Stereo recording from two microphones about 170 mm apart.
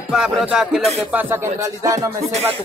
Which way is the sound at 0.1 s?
5° right (ahead or behind).